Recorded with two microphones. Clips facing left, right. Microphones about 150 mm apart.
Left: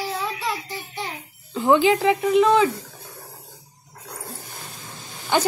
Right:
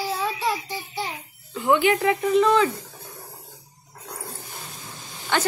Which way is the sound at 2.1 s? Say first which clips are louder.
Left 1 dB; 10° left (ahead or behind).